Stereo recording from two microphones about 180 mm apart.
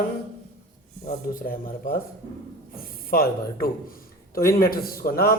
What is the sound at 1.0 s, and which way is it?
A man's voice, 50° left (ahead or behind).